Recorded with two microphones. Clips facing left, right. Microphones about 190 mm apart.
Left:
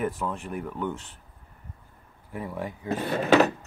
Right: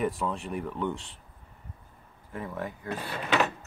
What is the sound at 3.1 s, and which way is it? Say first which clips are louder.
Speech: left 8 dB; 45° left (ahead or behind).